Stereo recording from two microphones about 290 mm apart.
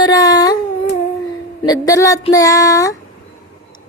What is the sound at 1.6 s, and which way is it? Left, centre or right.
Speech, centre.